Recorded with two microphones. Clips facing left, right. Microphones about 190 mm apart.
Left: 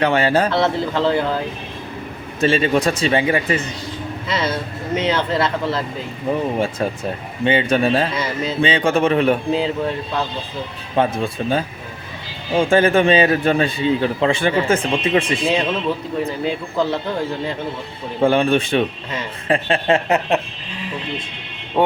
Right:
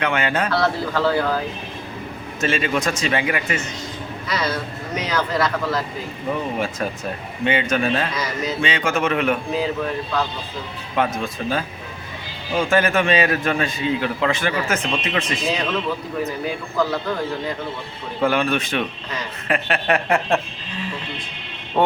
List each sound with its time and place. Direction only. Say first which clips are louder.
0.0 s a man's voice: left 5 dB; 35° left (ahead or behind)
2.4 s a man's voice: left 5 dB; 30° left (ahead or behind)
7.4 s a man's voice: left 4 dB; 30° left (ahead or behind)
18.2 s a man's voice: left 5 dB; 30° left (ahead or behind)
21.8 s music: left 1 dB; 15° left (ahead or behind)